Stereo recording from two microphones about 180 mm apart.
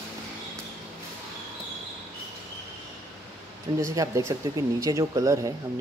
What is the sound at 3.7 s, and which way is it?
Speech, 20° right (ahead or behind).